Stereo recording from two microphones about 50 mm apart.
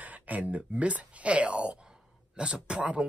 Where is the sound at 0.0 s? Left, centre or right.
Right.